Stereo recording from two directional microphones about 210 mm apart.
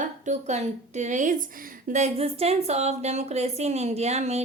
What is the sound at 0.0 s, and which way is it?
A woman's voice, 35° right (ahead or behind).